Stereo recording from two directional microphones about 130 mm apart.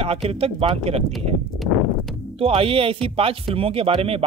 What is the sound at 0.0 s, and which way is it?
Speech, 50° right (ahead or behind).